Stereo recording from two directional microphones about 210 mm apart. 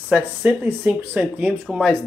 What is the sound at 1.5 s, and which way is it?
Speech, centre (ahead or behind).